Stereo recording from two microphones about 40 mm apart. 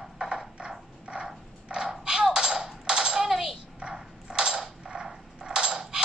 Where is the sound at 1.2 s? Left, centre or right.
Centre.